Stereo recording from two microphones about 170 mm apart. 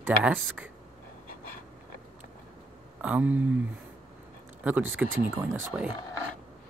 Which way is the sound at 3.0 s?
10° right (ahead or behind).